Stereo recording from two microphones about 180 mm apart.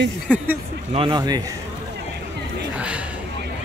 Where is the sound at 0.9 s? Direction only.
30° right (ahead or behind).